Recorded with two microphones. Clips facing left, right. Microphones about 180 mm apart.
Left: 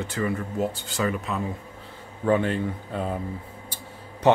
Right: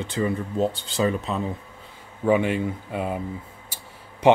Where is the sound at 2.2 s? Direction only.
10° right (ahead or behind).